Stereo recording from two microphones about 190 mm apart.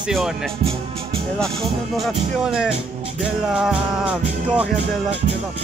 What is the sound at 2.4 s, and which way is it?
Speech, 5° right (ahead or behind).